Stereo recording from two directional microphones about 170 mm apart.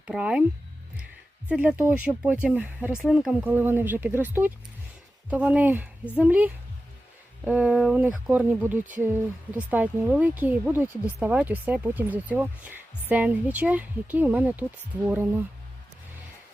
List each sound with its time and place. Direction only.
0.1 s speech: 5° right (ahead or behind)
1.5 s speech: 10° right (ahead or behind)